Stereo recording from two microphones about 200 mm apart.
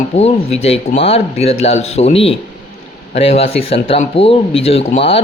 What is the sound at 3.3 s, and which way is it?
Speech, 30° left (ahead or behind).